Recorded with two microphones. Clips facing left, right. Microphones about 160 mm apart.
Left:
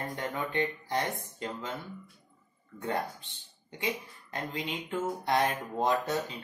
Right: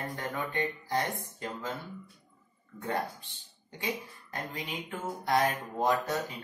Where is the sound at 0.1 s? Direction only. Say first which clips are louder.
Left 1 dB; 20° left (ahead or behind).